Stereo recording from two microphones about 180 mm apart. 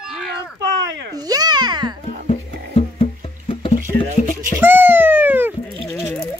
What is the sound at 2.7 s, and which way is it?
Music, 35° left (ahead or behind).